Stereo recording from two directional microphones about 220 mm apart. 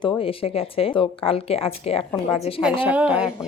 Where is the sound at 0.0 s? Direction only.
25° left (ahead or behind).